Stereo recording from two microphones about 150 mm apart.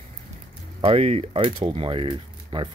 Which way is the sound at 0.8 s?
45° right (ahead or behind).